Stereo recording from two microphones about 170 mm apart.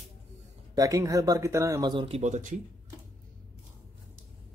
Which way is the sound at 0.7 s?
20° right (ahead or behind).